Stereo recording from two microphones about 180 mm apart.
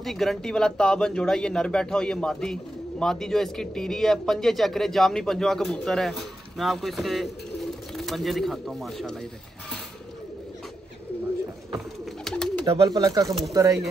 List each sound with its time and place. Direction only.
0.0 s a man's voice: centre (ahead or behind)
12.3 s bird: 5° left (ahead or behind)
12.6 s speech: 30° right (ahead or behind)